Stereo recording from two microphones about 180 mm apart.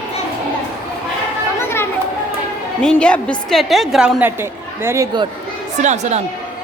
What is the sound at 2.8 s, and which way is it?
A woman's voice, 5° left (ahead or behind).